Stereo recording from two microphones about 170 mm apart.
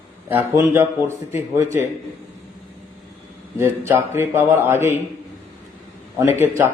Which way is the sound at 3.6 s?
15° right (ahead or behind).